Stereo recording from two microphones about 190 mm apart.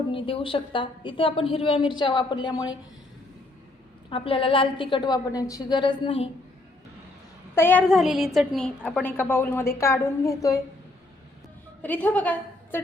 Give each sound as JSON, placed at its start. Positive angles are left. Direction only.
{"t": 0.1, "sound": "a woman's voice", "side_deg": 30}
{"t": 4.1, "sound": "a woman's voice", "side_deg": 30}
{"t": 7.5, "sound": "a woman's voice", "side_deg": 10}
{"t": 11.8, "sound": "a woman's voice", "side_deg": 10}